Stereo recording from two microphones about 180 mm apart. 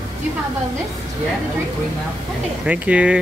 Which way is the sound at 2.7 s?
5° right (ahead or behind).